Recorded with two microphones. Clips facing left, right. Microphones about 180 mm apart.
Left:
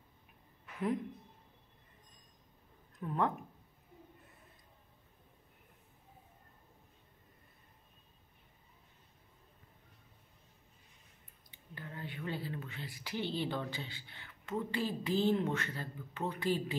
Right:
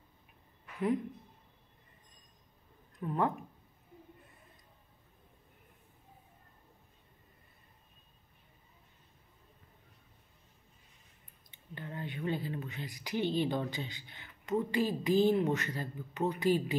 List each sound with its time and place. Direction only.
3.0 s speech: 5° right (ahead or behind)
11.5 s speech: 25° right (ahead or behind)